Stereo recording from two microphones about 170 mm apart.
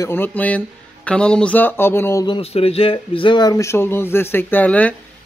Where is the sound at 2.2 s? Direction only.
30° left (ahead or behind).